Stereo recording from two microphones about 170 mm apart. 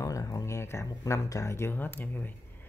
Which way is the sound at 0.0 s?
20° left (ahead or behind).